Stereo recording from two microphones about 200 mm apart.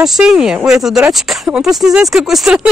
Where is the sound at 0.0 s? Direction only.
Centre (ahead or behind).